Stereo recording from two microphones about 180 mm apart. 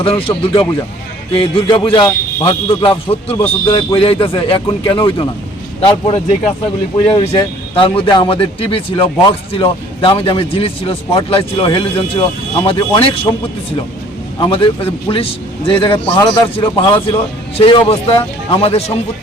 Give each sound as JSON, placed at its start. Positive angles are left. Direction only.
{"t": 0.0, "sound": "a man's voice", "side_deg": 30}
{"t": 14.3, "sound": "a man's voice", "side_deg": 30}